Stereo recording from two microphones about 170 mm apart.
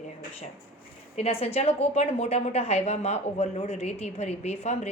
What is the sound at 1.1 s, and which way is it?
A woman's voice, 35° left (ahead or behind).